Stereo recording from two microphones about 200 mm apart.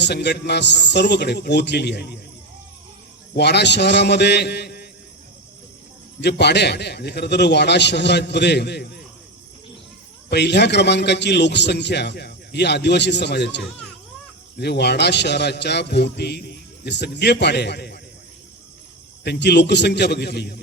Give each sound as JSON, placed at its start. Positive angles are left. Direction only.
{"t": 0.0, "sound": "a man's voice", "side_deg": 55}
{"t": 3.3, "sound": "a man's voice", "side_deg": 55}
{"t": 6.2, "sound": "a man's voice", "side_deg": 60}
{"t": 10.2, "sound": "a man's voice", "side_deg": 55}
{"t": 19.2, "sound": "a man's voice", "side_deg": 55}